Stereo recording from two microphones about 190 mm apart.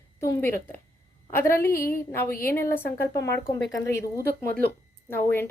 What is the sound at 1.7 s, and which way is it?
Speech, 50° left (ahead or behind).